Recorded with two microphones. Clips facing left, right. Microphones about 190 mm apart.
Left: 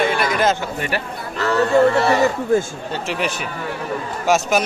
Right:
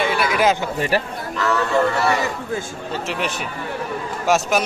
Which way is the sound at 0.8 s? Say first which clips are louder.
Right 4 dB; 35° right (ahead or behind).